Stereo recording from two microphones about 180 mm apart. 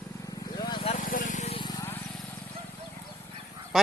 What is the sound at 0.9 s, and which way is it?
Vehicle, 50° left (ahead or behind).